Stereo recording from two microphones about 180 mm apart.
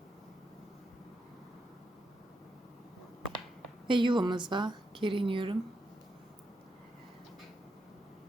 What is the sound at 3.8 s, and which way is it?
A woman's voice, 25° right (ahead or behind).